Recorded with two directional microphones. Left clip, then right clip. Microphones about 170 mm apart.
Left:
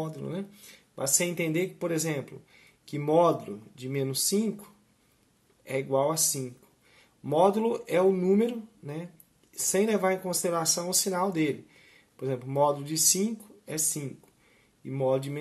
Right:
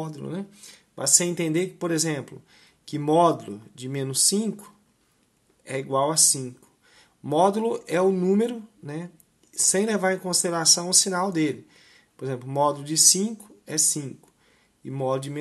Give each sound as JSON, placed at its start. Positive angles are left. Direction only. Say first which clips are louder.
{"t": 0.0, "sound": "speech", "louder": "right 1 dB", "side_deg": -30}
{"t": 5.7, "sound": "speech", "louder": "right 2 dB", "side_deg": -35}